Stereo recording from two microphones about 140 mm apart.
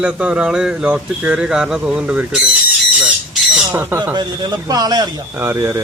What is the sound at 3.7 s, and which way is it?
Speech, 15° right (ahead or behind).